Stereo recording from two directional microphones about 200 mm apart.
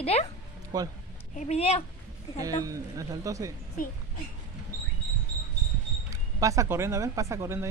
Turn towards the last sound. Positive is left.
turn(degrees=-15)  # may be behind; listen again after turning